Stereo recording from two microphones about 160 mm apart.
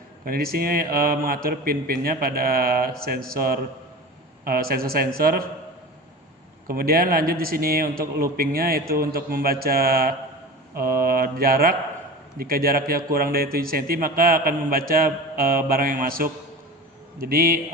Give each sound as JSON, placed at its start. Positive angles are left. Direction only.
{"t": 0.3, "sound": "a man's voice", "side_deg": -70}
{"t": 6.7, "sound": "a man's voice", "side_deg": -65}